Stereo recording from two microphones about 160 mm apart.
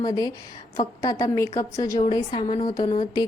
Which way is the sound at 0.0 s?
25° left (ahead or behind).